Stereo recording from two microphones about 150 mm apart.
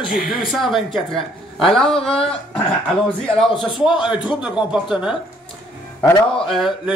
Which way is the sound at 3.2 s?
Centre (ahead or behind).